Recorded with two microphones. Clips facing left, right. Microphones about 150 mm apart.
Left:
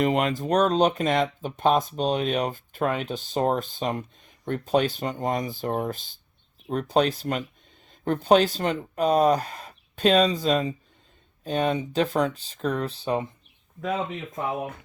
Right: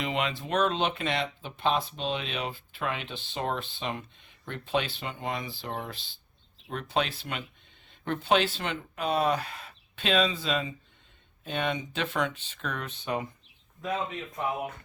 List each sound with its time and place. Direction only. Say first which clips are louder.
0.0 s speech: left 8 dB; 45° left (ahead or behind)